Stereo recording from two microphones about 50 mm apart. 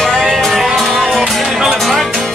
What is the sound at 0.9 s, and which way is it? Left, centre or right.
Music, centre.